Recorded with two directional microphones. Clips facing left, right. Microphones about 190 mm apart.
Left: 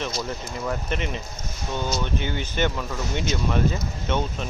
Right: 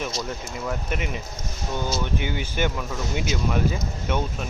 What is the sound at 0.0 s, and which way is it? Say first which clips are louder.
Speech: even; centre (ahead or behind).